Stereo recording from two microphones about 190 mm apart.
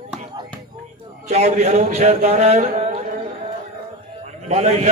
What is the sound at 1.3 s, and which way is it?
A man's voice, 35° right (ahead or behind).